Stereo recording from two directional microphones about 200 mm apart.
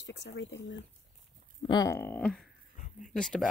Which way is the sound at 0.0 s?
60° left (ahead or behind).